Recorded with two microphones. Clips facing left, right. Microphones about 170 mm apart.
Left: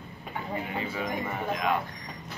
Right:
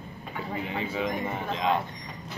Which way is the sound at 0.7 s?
20° right (ahead or behind).